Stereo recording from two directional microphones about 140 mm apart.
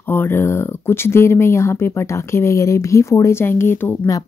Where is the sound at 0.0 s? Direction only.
15° left (ahead or behind).